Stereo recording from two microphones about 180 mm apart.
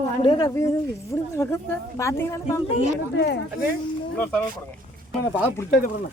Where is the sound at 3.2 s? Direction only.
70° left (ahead or behind).